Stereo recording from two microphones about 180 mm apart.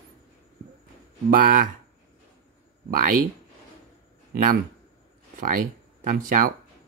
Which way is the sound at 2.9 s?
50° right (ahead or behind).